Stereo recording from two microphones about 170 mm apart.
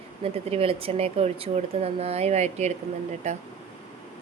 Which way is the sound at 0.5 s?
35° right (ahead or behind).